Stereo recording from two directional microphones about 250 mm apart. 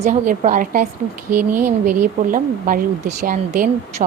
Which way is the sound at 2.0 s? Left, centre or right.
Right.